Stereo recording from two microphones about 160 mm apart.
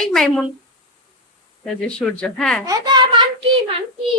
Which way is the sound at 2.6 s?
25° right (ahead or behind).